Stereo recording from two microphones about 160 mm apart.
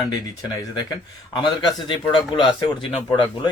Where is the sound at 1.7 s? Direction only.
30° left (ahead or behind).